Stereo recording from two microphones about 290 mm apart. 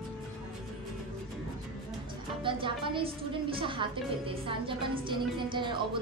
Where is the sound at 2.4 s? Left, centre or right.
Centre.